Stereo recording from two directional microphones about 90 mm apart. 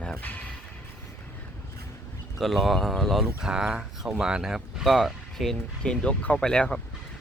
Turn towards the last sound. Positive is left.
turn(degrees=10)  # may be behind; listen again after turning